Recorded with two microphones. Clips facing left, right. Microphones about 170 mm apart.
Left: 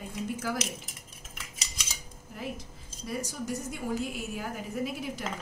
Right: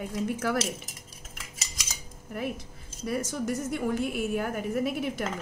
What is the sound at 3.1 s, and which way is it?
A woman's voice, 60° right (ahead or behind).